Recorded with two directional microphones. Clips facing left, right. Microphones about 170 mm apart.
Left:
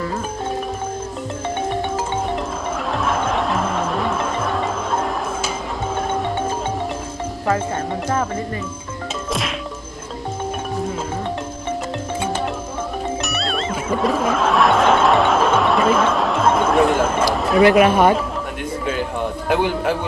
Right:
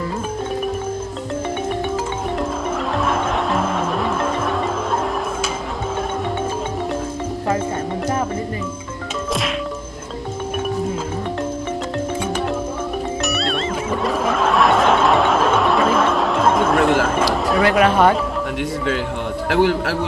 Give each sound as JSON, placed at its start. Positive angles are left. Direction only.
{"t": 3.0, "sound": "music", "side_deg": 0}
{"t": 13.2, "sound": "music", "side_deg": 0}
{"t": 17.3, "sound": "a sound", "side_deg": 0}
{"t": 17.6, "sound": "speech", "side_deg": 15}
{"t": 19.5, "sound": "a man's voice", "side_deg": -80}